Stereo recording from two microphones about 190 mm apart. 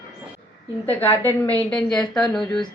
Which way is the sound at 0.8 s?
10° left (ahead or behind).